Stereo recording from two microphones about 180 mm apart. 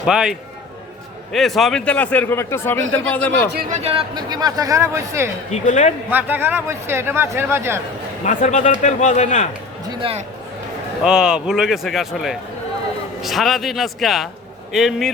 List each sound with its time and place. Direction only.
0.0 s a man's voice: 5° right (ahead or behind)
3.6 s speech: 40° right (ahead or behind); by 5.3 s 15° right (ahead or behind)
5.5 s a man's voice: 40° left (ahead or behind)
6.1 s speech: 10° right (ahead or behind)
8.2 s a man's voice: 45° left (ahead or behind)
9.9 s a man's voice: 30° right (ahead or behind)
11.0 s a man's voice: 5° right (ahead or behind)